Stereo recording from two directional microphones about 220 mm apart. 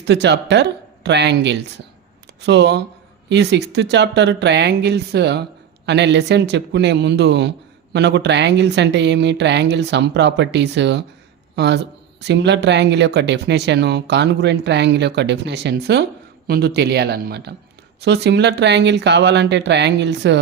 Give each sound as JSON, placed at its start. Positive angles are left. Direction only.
{"t": 0.0, "sound": "speech", "side_deg": -50}